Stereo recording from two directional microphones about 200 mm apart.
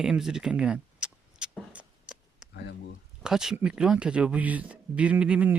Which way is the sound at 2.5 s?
60° left (ahead or behind).